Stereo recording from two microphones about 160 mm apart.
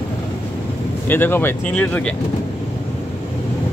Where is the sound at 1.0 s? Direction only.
15° left (ahead or behind).